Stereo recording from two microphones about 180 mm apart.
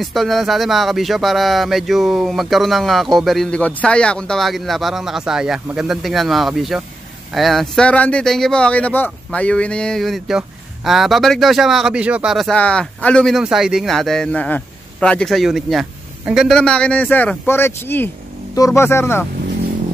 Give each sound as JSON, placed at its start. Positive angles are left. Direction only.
{"t": 0.0, "sound": "speech", "side_deg": 0}